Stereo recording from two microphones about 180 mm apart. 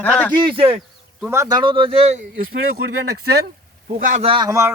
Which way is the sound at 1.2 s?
15° right (ahead or behind).